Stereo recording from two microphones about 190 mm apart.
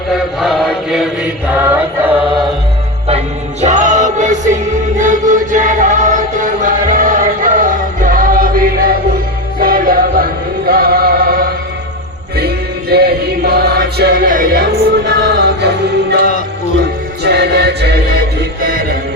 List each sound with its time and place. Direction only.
0.3 s chant: centre (ahead or behind)
3.6 s music: 40° right (ahead or behind)
10.7 s chant: 55° right (ahead or behind)
12.9 s music: 55° right (ahead or behind)